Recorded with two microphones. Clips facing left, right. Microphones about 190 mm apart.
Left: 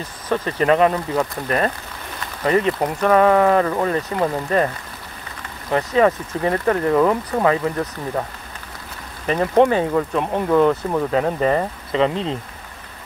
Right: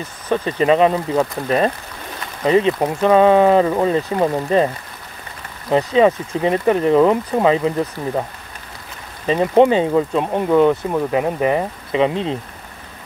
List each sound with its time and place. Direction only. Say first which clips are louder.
0.3 s speech: right 2 dB; 20° right (ahead or behind)
5.7 s speech: right 3 dB; 20° right (ahead or behind)